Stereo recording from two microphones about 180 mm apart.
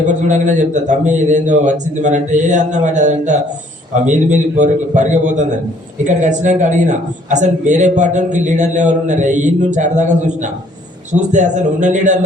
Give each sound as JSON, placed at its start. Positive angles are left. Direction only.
{"t": 0.0, "sound": "a man's voice", "side_deg": -40}